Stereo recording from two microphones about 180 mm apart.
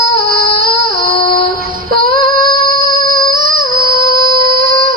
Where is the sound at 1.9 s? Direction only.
55° right (ahead or behind).